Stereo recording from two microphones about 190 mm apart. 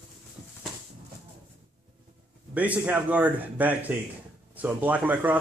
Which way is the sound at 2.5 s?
10° right (ahead or behind).